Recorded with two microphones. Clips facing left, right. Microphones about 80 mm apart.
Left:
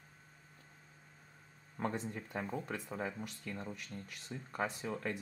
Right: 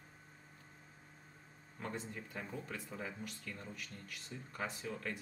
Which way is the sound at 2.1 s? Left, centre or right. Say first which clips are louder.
Left 5 dB; left.